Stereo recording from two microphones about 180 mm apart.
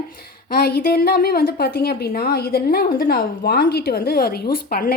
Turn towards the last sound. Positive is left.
turn(degrees=55)  # may be behind; listen again after turning